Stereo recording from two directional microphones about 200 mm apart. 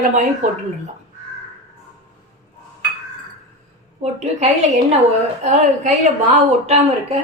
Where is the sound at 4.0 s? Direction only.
35° right (ahead or behind).